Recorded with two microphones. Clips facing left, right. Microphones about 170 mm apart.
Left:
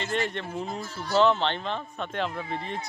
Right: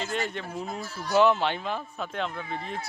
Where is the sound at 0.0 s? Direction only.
Centre (ahead or behind).